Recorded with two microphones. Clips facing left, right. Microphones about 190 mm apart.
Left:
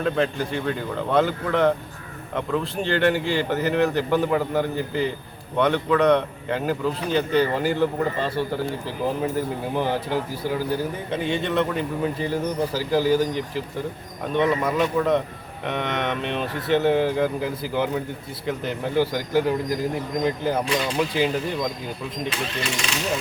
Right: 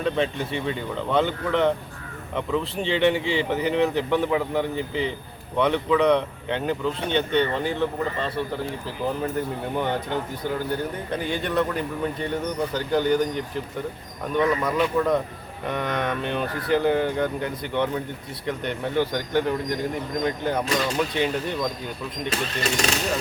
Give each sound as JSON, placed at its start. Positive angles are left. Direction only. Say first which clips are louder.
{"t": 0.0, "sound": "speech", "louder": "left 1 dB", "side_deg": 0}
{"t": 14.6, "sound": "speech", "louder": "left 1 dB", "side_deg": 0}
{"t": 22.3, "sound": "speech", "louder": "right 4 dB", "side_deg": -40}